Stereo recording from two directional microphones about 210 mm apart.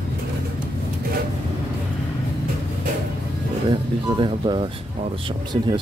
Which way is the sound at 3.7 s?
25° right (ahead or behind).